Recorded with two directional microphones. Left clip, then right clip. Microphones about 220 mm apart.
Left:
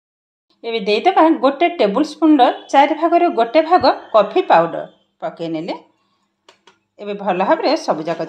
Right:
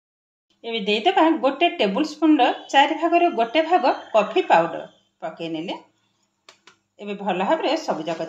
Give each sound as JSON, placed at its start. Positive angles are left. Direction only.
{"t": 0.6, "sound": "speech", "side_deg": 40}
{"t": 7.0, "sound": "speech", "side_deg": 35}